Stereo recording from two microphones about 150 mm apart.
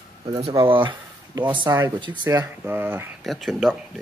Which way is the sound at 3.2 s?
Centre (ahead or behind).